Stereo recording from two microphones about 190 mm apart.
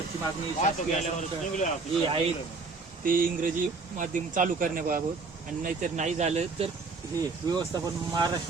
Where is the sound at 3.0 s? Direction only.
45° right (ahead or behind).